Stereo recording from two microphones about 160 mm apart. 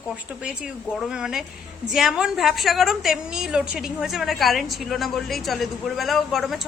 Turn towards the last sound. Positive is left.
turn(degrees=0)  # may be behind; listen again after turning